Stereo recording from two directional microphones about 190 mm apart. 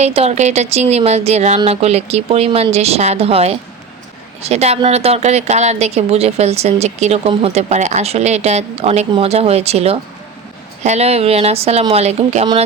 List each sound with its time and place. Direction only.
0.0 s a woman's voice: 35° right (ahead or behind)